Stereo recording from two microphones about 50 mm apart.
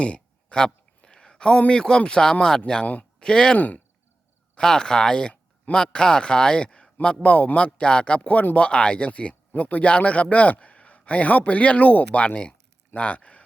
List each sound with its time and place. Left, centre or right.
0.0 s speech: centre
2.8 s a man's voice: left
3.2 s a man's voice: centre